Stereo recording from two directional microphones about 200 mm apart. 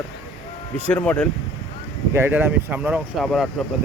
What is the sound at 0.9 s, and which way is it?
Speech, 10° left (ahead or behind).